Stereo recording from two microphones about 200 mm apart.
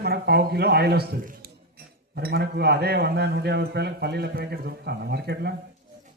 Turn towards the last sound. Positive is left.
turn(degrees=-55)  # may be behind; listen again after turning